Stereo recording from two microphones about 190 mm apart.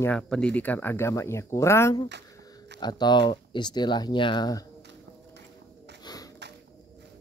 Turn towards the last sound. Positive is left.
turn(degrees=20)  # may be behind; listen again after turning